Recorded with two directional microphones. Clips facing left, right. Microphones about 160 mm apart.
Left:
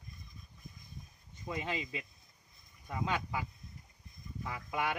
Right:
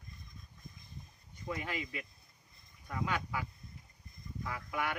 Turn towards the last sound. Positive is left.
turn(degrees=20)  # may be behind; listen again after turning